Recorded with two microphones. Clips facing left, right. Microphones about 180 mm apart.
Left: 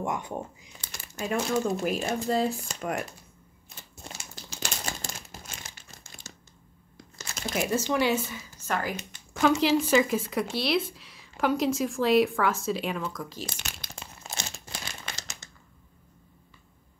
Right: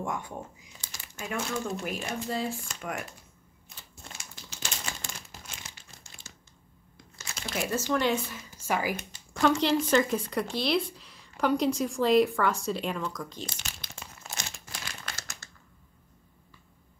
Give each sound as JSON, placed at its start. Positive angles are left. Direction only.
{"t": 0.0, "sound": "speech", "side_deg": 20}
{"t": 1.1, "sound": "speech", "side_deg": 40}
{"t": 3.6, "sound": "crumpling", "side_deg": 30}
{"t": 6.2, "sound": "a sound", "side_deg": 40}
{"t": 7.5, "sound": "a woman's voice", "side_deg": 15}
{"t": 8.5, "sound": "speech", "side_deg": -10}
{"t": 9.6, "sound": "speech", "side_deg": 5}
{"t": 13.5, "sound": "crumpling", "side_deg": 60}
{"t": 14.2, "sound": "crumpling", "side_deg": 25}